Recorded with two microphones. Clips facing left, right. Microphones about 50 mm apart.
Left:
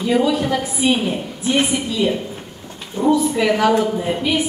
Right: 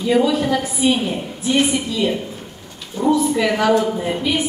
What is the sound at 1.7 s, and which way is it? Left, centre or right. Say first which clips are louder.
A woman's voice: even; centre.